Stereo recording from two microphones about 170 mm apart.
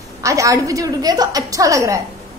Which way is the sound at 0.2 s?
20° right (ahead or behind).